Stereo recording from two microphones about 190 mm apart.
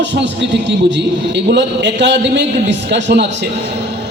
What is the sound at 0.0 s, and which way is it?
A man's voice, 70° right (ahead or behind).